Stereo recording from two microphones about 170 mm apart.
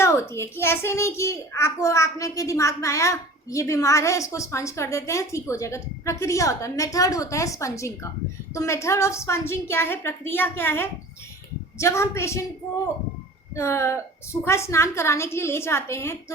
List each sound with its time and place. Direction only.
0.0 s a child's voice: 15° left (ahead or behind)
13.6 s a child's voice: 15° left (ahead or behind)